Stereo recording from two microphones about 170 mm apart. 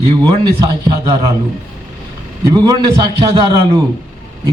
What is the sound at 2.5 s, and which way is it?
Speech, 25° right (ahead or behind).